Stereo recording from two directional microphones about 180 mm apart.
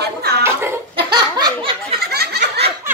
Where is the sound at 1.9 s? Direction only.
60° right (ahead or behind).